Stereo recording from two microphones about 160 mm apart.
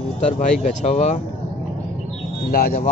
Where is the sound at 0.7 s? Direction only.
45° left (ahead or behind).